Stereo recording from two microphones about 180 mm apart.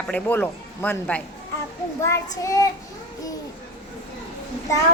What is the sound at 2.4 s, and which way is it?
Child singing, 20° left (ahead or behind).